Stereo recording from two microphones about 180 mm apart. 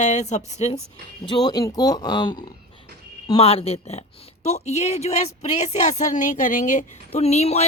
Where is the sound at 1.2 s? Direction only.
20° left (ahead or behind).